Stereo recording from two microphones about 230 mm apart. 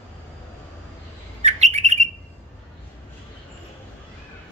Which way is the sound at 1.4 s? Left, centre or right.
Right.